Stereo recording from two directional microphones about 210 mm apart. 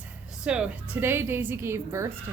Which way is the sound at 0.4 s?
5° right (ahead or behind).